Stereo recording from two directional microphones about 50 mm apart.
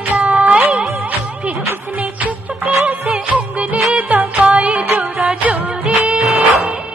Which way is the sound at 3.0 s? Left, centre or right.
Right.